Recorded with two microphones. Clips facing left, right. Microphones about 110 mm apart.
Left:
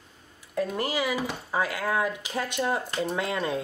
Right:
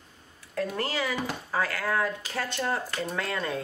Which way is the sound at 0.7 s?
15° left (ahead or behind).